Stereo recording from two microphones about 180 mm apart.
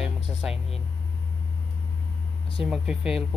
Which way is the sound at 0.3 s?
5° right (ahead or behind).